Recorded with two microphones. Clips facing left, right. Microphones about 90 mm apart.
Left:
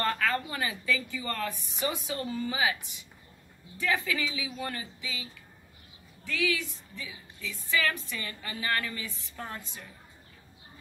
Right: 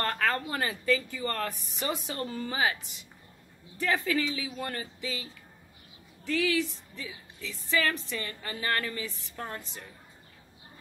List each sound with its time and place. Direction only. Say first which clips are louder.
0.0 s a woman's voice: even; 40° right (ahead or behind)
3.8 s a woman's voice: right 2 dB; 40° right (ahead or behind)
6.2 s a woman's voice: right 3 dB; 35° right (ahead or behind)